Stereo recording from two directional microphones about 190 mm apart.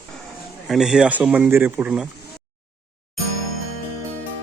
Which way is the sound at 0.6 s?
Centre (ahead or behind).